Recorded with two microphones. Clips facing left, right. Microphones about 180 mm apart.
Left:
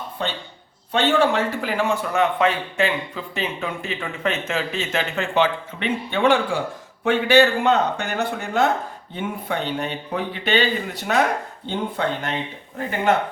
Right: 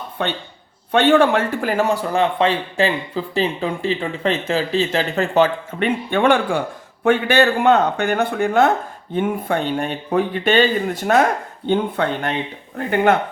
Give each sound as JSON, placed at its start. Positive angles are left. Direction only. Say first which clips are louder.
{"t": 0.2, "sound": "a man's voice", "louder": "right 5 dB", "side_deg": -60}
{"t": 11.6, "sound": "speech", "louder": "right 7 dB", "side_deg": -60}